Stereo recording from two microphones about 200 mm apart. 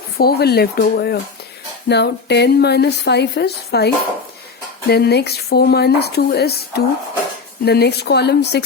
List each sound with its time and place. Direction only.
0.2 s a woman's voice: 50° left (ahead or behind)